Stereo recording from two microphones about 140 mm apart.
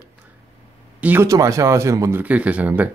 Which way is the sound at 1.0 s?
10° right (ahead or behind).